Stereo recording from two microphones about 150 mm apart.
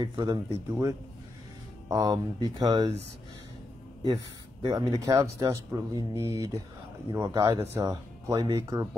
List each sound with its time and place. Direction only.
0.0 s speech: 30° right (ahead or behind)
4.0 s speech: 30° right (ahead or behind)